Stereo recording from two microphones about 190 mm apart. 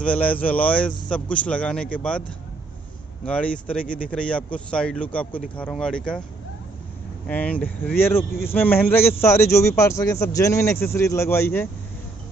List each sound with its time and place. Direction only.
0.0 s speech: 5° left (ahead or behind)
3.3 s speech: 5° left (ahead or behind)
3.8 s speech: 45° left (ahead or behind)
4.1 s speech: 5° left (ahead or behind)
7.2 s speech: 10° left (ahead or behind)